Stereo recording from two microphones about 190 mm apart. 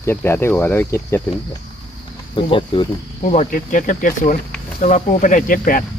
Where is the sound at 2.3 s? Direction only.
25° left (ahead or behind).